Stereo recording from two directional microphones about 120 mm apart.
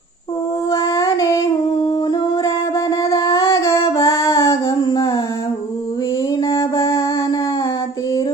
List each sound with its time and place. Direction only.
0.7 s a sound: 30° left (ahead or behind)
3.0 s female singing: 30° left (ahead or behind)
6.5 s mantra: 25° left (ahead or behind)